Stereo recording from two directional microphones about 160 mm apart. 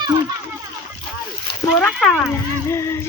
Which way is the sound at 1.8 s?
5° left (ahead or behind).